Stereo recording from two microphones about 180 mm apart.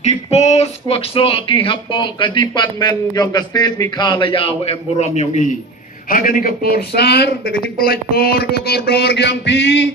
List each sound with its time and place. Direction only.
0.0 s a man's voice: 35° left (ahead or behind)
6.1 s speech: 50° left (ahead or behind); by 9.9 s 80° left